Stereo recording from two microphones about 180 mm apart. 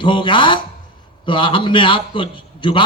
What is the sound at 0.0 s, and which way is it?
A man's voice, 25° left (ahead or behind).